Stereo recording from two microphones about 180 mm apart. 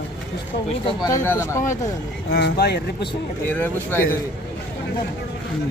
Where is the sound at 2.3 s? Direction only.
60° left (ahead or behind).